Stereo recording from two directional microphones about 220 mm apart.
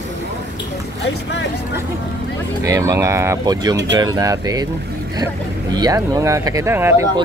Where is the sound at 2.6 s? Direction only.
15° right (ahead or behind).